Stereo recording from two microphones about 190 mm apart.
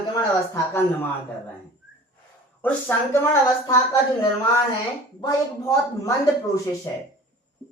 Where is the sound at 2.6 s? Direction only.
10° left (ahead or behind).